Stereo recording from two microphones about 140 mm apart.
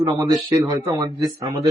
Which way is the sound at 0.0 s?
30° right (ahead or behind).